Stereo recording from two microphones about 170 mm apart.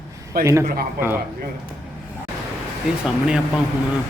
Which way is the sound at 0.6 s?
60° right (ahead or behind).